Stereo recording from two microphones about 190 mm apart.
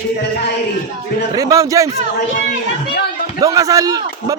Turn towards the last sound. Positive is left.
turn(degrees=-20)  # may be behind; listen again after turning